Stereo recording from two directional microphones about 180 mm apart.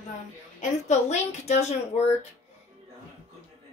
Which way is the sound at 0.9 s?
40° left (ahead or behind).